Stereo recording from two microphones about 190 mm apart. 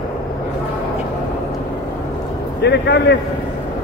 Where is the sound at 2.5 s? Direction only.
60° left (ahead or behind).